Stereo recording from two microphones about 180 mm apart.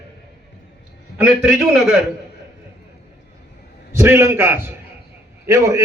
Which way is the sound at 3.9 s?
15° right (ahead or behind).